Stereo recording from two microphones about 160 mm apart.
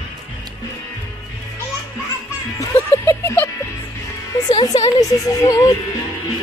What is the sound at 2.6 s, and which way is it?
Music, 15° left (ahead or behind).